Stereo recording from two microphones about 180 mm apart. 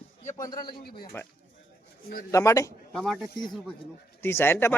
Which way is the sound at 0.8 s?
60° left (ahead or behind).